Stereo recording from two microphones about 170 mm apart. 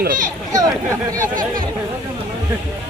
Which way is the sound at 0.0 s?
55° right (ahead or behind).